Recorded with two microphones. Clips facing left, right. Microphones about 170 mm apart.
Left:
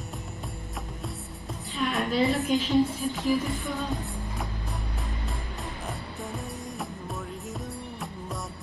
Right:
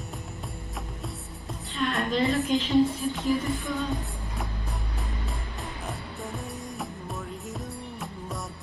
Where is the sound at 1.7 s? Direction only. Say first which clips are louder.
Even; centre (ahead or behind).